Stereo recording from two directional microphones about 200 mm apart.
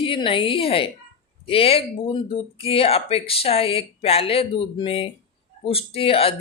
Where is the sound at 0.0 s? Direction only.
25° left (ahead or behind).